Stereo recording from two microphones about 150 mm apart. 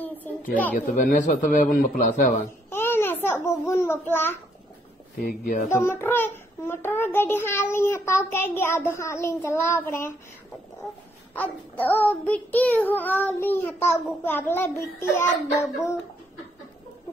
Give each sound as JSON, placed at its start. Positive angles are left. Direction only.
{"t": 0.0, "sound": "a sound", "side_deg": 10}
{"t": 0.7, "sound": "speech", "side_deg": 60}
{"t": 2.7, "sound": "a child's voice", "side_deg": 15}
{"t": 5.2, "sound": "speech", "side_deg": 70}
{"t": 5.7, "sound": "a child's voice", "side_deg": 15}
{"t": 11.3, "sound": "a child's voice", "side_deg": 10}